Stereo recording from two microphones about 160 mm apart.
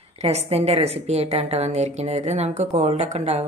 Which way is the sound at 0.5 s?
40° right (ahead or behind).